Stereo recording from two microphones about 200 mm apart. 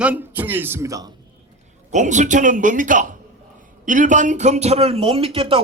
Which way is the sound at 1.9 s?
35° right (ahead or behind).